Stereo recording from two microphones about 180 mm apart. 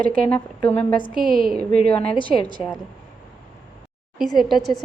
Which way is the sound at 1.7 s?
55° right (ahead or behind).